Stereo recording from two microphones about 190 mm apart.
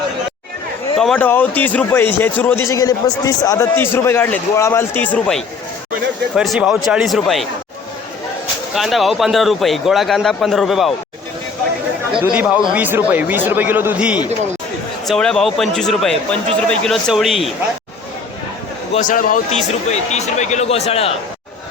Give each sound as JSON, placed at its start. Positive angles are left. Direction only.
{"t": 0.9, "sound": "a man's voice", "side_deg": 5}
{"t": 8.7, "sound": "speech", "side_deg": 0}
{"t": 12.2, "sound": "a man's voice", "side_deg": -5}
{"t": 18.9, "sound": "speech", "side_deg": 45}